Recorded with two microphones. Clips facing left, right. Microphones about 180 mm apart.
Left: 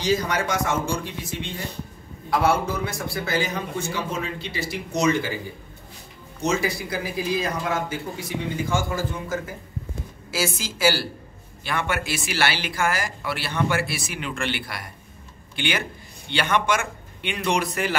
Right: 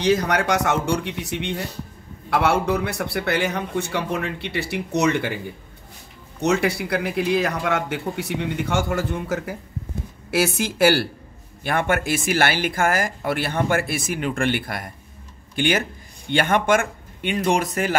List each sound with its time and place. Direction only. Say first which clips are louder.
0.0 s a man's voice: right 4 dB; 65° right (ahead or behind)
6.4 s a man's voice: right 4 dB; 70° right (ahead or behind); by 17.9 s 45° right (ahead or behind)